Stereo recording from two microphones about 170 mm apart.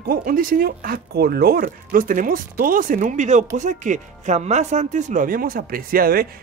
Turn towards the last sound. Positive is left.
turn(degrees=-60)  # may be behind; listen again after turning